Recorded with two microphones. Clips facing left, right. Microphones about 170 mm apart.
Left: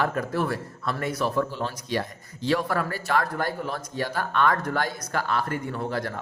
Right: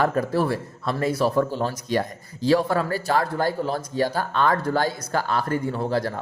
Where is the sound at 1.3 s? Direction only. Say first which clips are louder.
Right 4 dB; 40° right (ahead or behind).